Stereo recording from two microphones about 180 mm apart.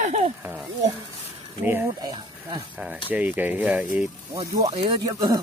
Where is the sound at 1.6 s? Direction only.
10° right (ahead or behind).